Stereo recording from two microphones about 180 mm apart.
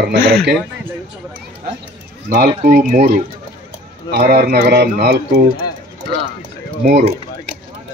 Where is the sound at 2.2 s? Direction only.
55° right (ahead or behind).